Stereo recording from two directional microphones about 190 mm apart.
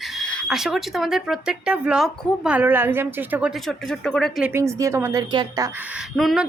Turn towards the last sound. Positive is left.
turn(degrees=0)  # may be behind; listen again after turning